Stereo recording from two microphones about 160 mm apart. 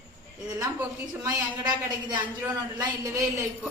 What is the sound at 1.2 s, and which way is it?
A woman's voice, 25° right (ahead or behind).